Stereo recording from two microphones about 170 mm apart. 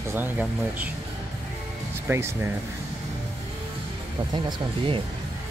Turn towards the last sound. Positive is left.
turn(degrees=-30)  # may be behind; listen again after turning